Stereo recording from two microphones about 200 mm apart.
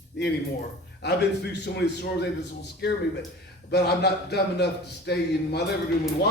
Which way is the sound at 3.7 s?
55° left (ahead or behind).